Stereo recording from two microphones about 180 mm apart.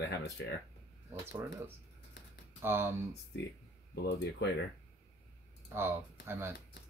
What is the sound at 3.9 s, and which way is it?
Speech, 65° left (ahead or behind).